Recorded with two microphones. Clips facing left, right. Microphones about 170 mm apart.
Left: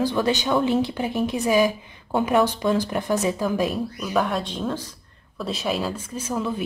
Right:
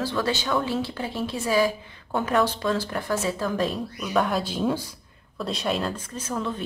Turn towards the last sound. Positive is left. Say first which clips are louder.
# left 3 dB
turn(degrees=10)  # may be behind; listen again after turning